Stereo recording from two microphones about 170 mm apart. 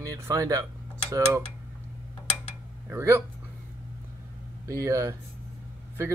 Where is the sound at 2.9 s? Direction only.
15° right (ahead or behind).